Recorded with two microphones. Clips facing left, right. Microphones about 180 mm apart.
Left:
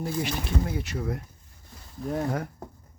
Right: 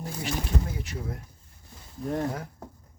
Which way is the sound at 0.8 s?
75° left (ahead or behind).